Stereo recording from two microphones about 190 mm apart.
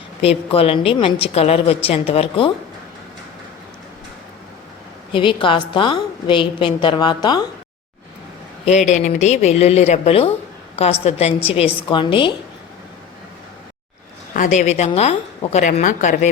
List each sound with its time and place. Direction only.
0.2 s a woman's voice: 30° left (ahead or behind)
5.1 s a woman's voice: 25° left (ahead or behind)
8.9 s a woman's voice: 40° left (ahead or behind)
14.3 s a woman's voice: 40° left (ahead or behind)